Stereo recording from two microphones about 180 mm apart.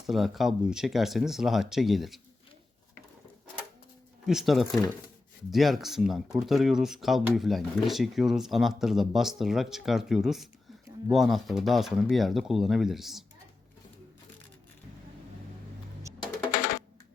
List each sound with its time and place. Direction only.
0.1 s speech: centre (ahead or behind)
4.3 s speech: centre (ahead or behind)
16.6 s music: 50° left (ahead or behind)